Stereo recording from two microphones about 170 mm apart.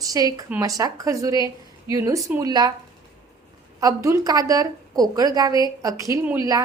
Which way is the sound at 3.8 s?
20° right (ahead or behind).